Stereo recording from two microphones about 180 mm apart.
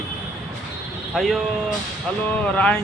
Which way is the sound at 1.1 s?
Centre (ahead or behind).